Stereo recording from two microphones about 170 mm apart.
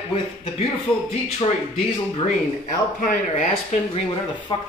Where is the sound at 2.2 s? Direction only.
55° left (ahead or behind).